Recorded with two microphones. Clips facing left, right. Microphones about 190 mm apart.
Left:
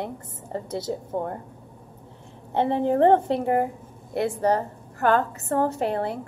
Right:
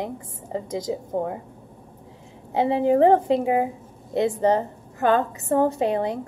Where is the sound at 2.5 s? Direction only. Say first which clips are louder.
Right 3 dB; 10° right (ahead or behind).